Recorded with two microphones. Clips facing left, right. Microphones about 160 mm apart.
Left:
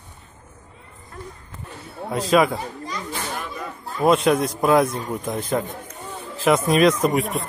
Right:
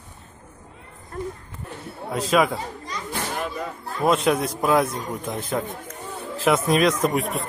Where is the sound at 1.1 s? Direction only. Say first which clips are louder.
Right 7 dB; 45° right (ahead or behind).